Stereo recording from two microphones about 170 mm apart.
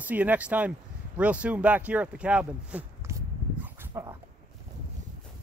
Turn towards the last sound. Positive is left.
turn(degrees=-15)  # may be behind; listen again after turning